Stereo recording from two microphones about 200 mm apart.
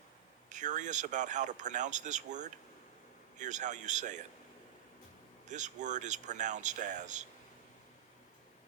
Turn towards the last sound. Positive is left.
turn(degrees=-40)  # may be behind; listen again after turning